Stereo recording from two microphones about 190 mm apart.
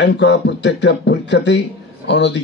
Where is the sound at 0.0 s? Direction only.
65° left (ahead or behind).